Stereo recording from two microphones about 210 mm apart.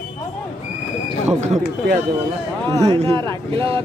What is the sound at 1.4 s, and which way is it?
Speech, 30° right (ahead or behind).